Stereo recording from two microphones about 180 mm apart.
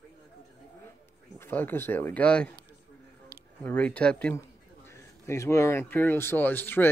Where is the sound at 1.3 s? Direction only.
10° left (ahead or behind).